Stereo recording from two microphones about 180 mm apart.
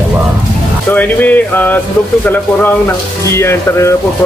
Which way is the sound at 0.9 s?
10° left (ahead or behind).